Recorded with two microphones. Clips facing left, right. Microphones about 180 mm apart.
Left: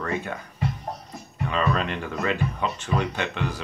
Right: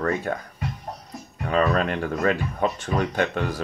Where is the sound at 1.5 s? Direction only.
50° right (ahead or behind).